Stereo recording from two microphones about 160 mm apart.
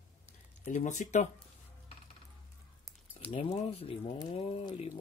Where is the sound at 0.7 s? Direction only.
50° left (ahead or behind).